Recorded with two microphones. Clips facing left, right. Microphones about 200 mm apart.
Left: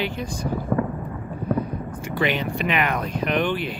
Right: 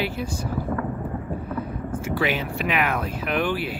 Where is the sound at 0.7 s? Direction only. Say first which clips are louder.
Left 6 dB; 50° left (ahead or behind).